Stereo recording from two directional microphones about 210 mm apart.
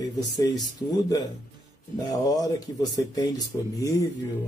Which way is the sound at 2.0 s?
20° left (ahead or behind).